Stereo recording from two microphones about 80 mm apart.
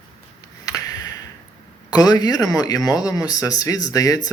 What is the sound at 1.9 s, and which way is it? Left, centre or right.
Speech, left.